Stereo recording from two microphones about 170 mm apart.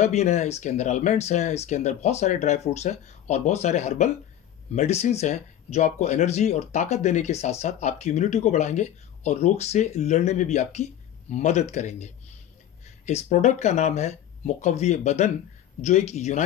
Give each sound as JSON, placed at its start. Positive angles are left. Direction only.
{"t": 0.0, "sound": "speech", "side_deg": 45}